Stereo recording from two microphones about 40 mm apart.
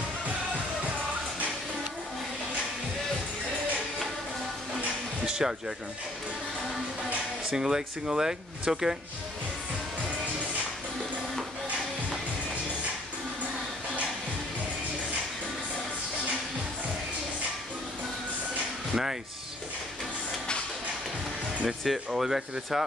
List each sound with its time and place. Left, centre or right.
5.2 s music: centre
7.5 s speech: centre
21.6 s speech: centre